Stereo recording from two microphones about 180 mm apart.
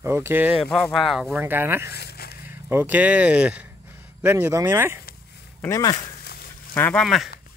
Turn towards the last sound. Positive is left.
turn(degrees=0)  # may be behind; listen again after turning